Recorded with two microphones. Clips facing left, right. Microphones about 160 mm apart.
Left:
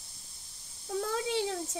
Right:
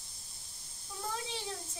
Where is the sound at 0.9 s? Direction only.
90° left.